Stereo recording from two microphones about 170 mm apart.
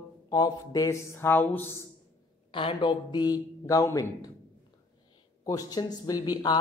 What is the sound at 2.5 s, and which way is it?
A man's voice, 30° left (ahead or behind).